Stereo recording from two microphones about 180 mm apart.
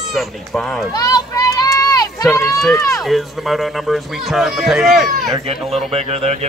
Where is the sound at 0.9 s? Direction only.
20° left (ahead or behind).